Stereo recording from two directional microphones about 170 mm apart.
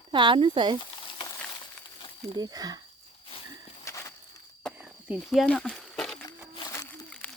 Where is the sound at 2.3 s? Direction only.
25° right (ahead or behind).